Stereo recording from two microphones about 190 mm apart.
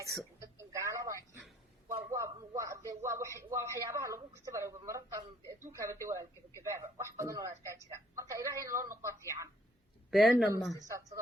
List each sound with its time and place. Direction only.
0.3 s a sound: 15° right (ahead or behind)
5.7 s speech: 15° right (ahead or behind)
10.1 s speech: centre (ahead or behind)
10.8 s speech: 15° right (ahead or behind)